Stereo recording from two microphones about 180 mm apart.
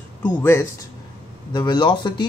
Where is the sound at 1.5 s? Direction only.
25° left (ahead or behind).